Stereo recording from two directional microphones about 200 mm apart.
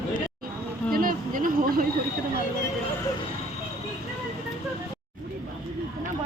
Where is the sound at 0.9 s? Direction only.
45° right (ahead or behind).